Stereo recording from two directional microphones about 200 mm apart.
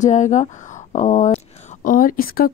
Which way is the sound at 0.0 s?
35° left (ahead or behind).